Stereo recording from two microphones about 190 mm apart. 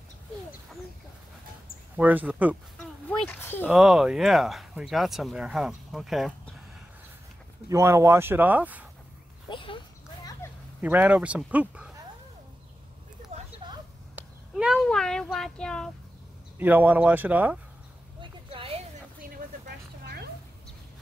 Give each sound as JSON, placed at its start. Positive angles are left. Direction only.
{"t": 2.0, "sound": "speech", "side_deg": -10}
{"t": 2.8, "sound": "a sound", "side_deg": 5}
{"t": 3.6, "sound": "speech", "side_deg": -5}
{"t": 7.6, "sound": "speech", "side_deg": -15}
{"t": 9.5, "sound": "a sound", "side_deg": 25}
{"t": 10.4, "sound": "whip", "side_deg": 10}
{"t": 10.8, "sound": "speech", "side_deg": -10}
{"t": 13.3, "sound": "a sound", "side_deg": -35}
{"t": 14.1, "sound": "speech", "side_deg": -5}
{"t": 16.5, "sound": "speech", "side_deg": -10}
{"t": 18.2, "sound": "a sound", "side_deg": -30}
{"t": 19.3, "sound": "vehicle", "side_deg": -55}